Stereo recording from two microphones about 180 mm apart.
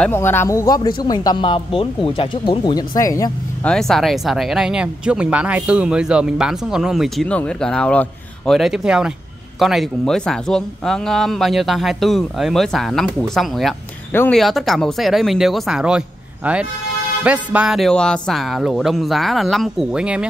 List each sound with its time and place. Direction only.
0.0 s speech: 10° left (ahead or behind)
3.6 s speech: 5° left (ahead or behind)
14.1 s speech: 10° left (ahead or behind)
14.4 s speech: centre (ahead or behind)
17.2 s speech: 5° right (ahead or behind)